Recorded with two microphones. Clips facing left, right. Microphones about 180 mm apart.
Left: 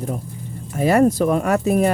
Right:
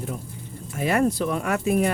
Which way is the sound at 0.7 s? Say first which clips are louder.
Left 6 dB; 40° left (ahead or behind).